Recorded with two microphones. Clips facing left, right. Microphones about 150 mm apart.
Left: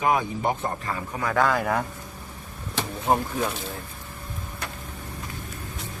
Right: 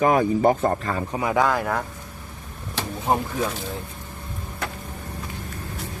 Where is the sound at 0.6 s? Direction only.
40° right (ahead or behind).